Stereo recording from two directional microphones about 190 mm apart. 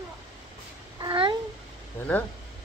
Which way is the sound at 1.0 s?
25° right (ahead or behind).